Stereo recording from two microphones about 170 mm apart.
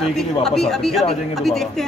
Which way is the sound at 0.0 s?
Centre (ahead or behind).